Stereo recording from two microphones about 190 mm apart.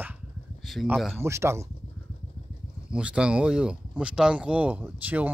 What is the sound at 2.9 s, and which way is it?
Speech, 5° right (ahead or behind).